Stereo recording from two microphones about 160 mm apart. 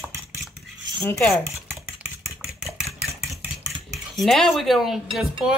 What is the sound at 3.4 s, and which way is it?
Cutlery, centre (ahead or behind).